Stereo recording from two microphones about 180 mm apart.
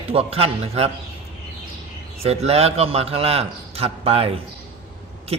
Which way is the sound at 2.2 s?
35° right (ahead or behind).